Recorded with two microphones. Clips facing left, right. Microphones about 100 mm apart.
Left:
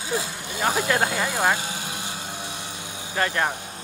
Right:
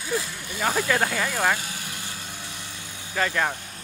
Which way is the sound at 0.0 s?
20° left (ahead or behind).